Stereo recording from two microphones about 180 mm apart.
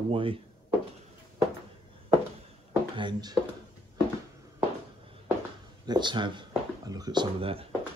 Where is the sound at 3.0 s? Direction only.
25° right (ahead or behind).